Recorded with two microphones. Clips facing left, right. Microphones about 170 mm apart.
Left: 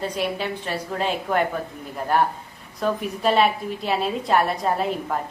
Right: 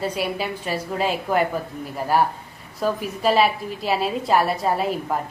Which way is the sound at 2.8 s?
5° right (ahead or behind).